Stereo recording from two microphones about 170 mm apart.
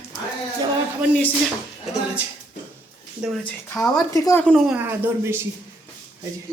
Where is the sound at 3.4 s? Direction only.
10° left (ahead or behind).